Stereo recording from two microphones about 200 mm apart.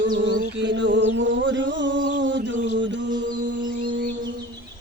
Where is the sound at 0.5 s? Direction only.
60° right (ahead or behind).